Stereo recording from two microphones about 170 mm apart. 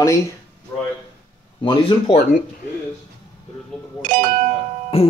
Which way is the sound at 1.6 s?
30° left (ahead or behind).